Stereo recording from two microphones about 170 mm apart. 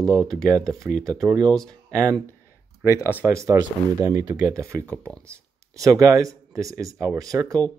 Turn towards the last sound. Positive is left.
turn(degrees=-20)  # may be behind; listen again after turning